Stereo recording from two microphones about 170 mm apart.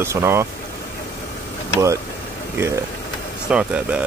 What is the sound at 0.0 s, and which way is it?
Speech, 15° right (ahead or behind).